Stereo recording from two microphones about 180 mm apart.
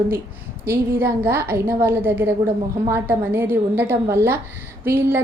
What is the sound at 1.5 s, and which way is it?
A woman's voice, 10° right (ahead or behind).